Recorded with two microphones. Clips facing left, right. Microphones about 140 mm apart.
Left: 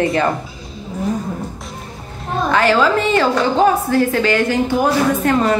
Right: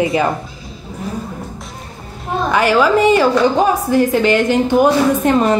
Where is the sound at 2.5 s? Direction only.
10° right (ahead or behind).